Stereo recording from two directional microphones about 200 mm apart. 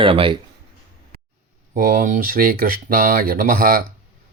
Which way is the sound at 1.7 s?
45° right (ahead or behind).